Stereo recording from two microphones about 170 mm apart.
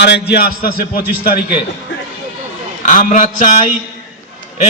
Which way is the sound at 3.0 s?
50° left (ahead or behind).